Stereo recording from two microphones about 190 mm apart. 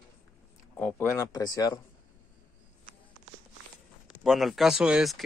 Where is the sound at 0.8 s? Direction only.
10° left (ahead or behind).